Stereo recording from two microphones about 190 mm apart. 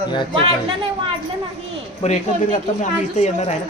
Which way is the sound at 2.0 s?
40° left (ahead or behind).